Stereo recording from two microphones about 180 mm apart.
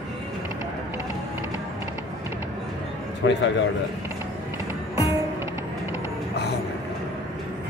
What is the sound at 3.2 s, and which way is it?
Speech, 90° left.